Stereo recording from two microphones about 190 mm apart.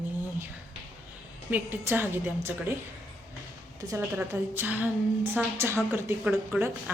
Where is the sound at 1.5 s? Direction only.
10° right (ahead or behind).